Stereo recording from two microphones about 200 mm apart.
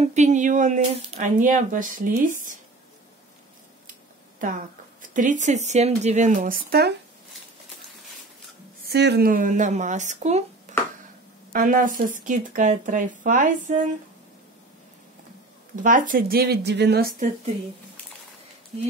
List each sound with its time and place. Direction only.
0.0 s speech: 35° right (ahead or behind)
4.4 s speech: 40° right (ahead or behind)
8.8 s speech: 55° right (ahead or behind); by 10.4 s 35° right (ahead or behind)
10.7 s finger snapping: 35° right (ahead or behind)
11.5 s speech: 45° right (ahead or behind)
15.7 s speech: 40° right (ahead or behind)